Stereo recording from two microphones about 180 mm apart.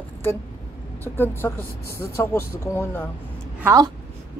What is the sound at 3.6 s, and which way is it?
Speech, 20° right (ahead or behind).